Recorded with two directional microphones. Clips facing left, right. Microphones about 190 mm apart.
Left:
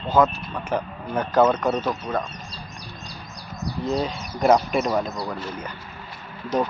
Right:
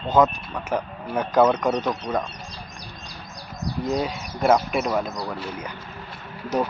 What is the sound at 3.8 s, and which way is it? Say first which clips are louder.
Speech: left 1 dB; 10° right (ahead or behind).